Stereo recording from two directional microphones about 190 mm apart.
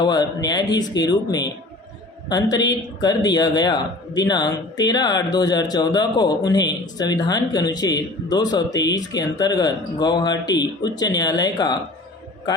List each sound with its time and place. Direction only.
0.0 s speech: 20° left (ahead or behind)
2.6 s speech: 20° left (ahead or behind)